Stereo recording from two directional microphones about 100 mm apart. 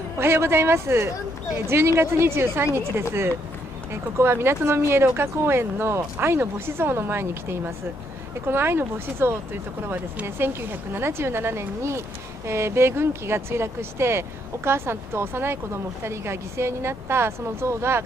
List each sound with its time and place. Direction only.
0.2 s speech: 25° right (ahead or behind)